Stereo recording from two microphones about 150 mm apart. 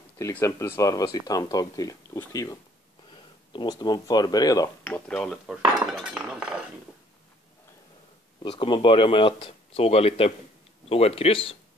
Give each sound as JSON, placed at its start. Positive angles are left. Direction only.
{"t": 0.2, "sound": "speech", "side_deg": 20}
{"t": 4.9, "sound": "speech", "side_deg": 10}
{"t": 5.2, "sound": "cutlery", "side_deg": 0}
{"t": 8.4, "sound": "speech", "side_deg": 35}